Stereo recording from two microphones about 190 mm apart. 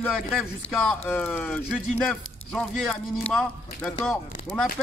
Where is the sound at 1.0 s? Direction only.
5° left (ahead or behind).